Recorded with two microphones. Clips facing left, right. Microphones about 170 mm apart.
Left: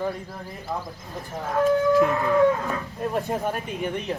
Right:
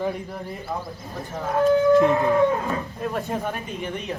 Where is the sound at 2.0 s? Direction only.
20° right (ahead or behind).